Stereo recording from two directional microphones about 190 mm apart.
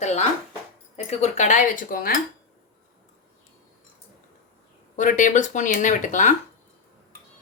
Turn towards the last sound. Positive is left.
turn(degrees=40)  # may be behind; listen again after turning